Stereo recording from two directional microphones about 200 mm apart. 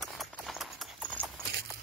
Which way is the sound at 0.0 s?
Centre (ahead or behind).